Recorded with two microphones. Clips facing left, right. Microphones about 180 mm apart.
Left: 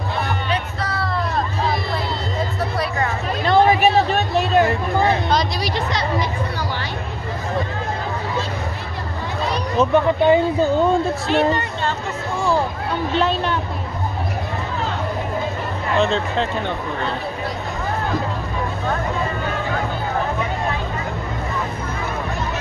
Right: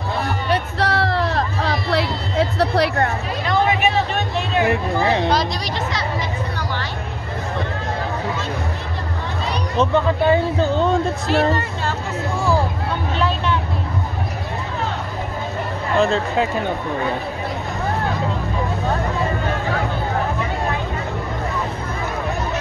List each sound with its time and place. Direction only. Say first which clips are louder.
0.7 s music: right 5 dB; 75° right (ahead or behind)
3.4 s music: left 4 dB; 30° left (ahead or behind)
9.8 s speech: left 2 dB; 15° left (ahead or behind)
11.2 s speech: even; 5° right (ahead or behind)
16.0 s speech: right 2 dB; 5° right (ahead or behind)